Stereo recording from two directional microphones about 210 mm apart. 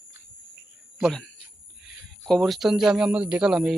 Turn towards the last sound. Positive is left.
turn(degrees=-5)  # may be behind; listen again after turning